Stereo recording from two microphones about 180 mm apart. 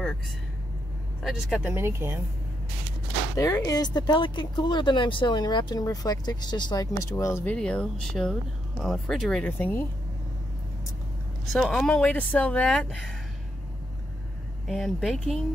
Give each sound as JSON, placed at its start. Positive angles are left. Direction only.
{"t": 1.2, "sound": "speech", "side_deg": 0}
{"t": 1.7, "sound": "speech", "side_deg": -15}
{"t": 3.3, "sound": "speech", "side_deg": 20}
{"t": 11.5, "sound": "speech", "side_deg": 5}
{"t": 14.7, "sound": "speech", "side_deg": 0}